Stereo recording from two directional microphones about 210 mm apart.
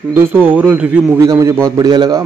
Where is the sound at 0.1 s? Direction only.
10° right (ahead or behind).